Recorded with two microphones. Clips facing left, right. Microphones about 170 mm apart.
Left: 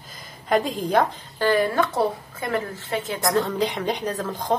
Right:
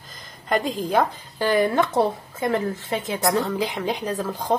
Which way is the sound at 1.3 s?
15° right (ahead or behind).